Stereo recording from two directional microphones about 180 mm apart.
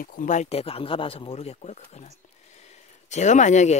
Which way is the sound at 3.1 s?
40° left (ahead or behind).